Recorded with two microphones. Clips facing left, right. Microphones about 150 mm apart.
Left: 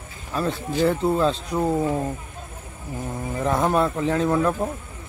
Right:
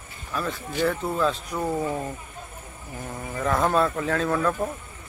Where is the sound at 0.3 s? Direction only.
30° left (ahead or behind).